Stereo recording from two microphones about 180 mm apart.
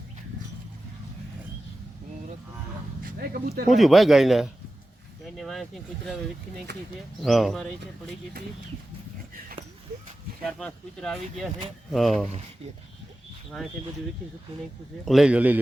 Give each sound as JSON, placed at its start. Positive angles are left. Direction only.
{"t": 3.0, "sound": "speech", "side_deg": -55}
{"t": 3.7, "sound": "speech", "side_deg": 0}
{"t": 7.2, "sound": "speech", "side_deg": 0}
{"t": 10.4, "sound": "speech", "side_deg": 5}
{"t": 15.0, "sound": "speech", "side_deg": 0}